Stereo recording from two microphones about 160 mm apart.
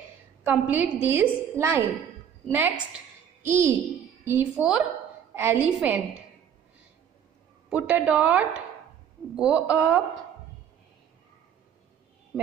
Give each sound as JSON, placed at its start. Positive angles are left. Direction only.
{"t": 0.5, "sound": "a woman's voice", "side_deg": -10}
{"t": 7.7, "sound": "a woman's voice", "side_deg": -5}